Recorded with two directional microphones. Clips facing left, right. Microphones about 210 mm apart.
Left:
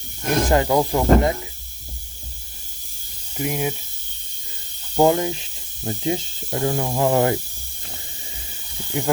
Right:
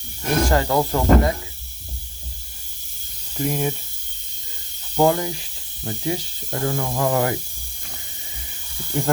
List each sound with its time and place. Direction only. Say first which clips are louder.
0.5 s speech: left 4 dB; 15° left (ahead or behind)
3.3 s speech: right 1 dB; 10° left (ahead or behind)
4.9 s speech: left 1 dB; 20° left (ahead or behind)
8.9 s speech: even; 5° left (ahead or behind)